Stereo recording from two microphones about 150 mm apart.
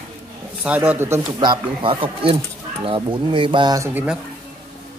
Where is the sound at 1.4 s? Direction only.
35° right (ahead or behind).